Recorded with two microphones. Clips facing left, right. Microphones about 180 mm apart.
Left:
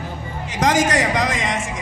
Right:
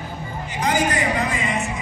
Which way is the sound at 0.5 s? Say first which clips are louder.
Left 4 dB; 90° left.